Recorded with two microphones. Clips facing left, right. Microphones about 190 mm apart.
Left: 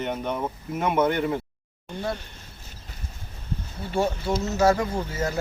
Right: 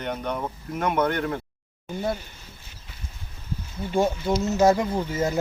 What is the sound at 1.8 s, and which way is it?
Speech, 5° right (ahead or behind).